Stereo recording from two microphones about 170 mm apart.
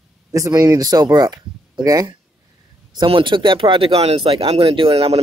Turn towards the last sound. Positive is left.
turn(degrees=-35)  # may be behind; listen again after turning